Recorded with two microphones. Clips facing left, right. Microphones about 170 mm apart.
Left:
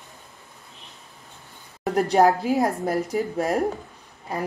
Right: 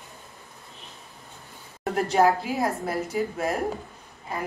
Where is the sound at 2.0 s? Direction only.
40° left (ahead or behind).